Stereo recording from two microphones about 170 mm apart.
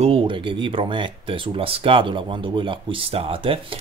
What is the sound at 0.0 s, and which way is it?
Speech, 30° right (ahead or behind).